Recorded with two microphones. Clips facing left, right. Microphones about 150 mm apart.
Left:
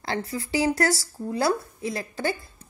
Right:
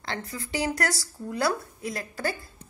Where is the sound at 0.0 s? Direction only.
35° left (ahead or behind).